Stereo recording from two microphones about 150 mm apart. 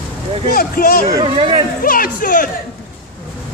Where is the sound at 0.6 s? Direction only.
85° left.